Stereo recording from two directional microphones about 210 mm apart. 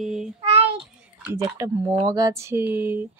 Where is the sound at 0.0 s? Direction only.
Centre (ahead or behind).